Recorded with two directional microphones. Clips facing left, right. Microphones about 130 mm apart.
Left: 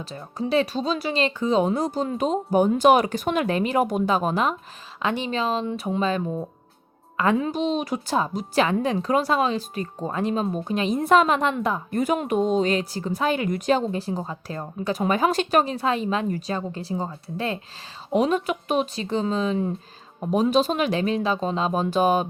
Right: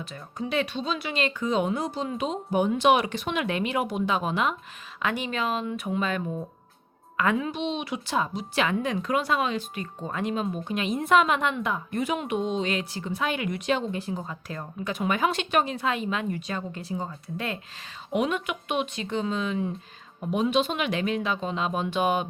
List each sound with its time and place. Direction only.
0.0 s a woman's voice: 35° left (ahead or behind)
5.0 s a woman's voice: 30° left (ahead or behind)